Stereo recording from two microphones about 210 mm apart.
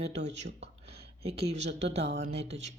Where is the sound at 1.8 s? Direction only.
30° right (ahead or behind).